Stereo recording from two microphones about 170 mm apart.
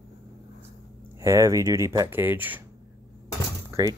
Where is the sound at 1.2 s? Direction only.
15° right (ahead or behind).